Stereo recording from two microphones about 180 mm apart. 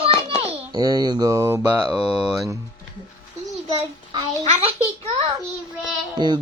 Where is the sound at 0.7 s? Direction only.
20° right (ahead or behind); by 2.5 s centre (ahead or behind).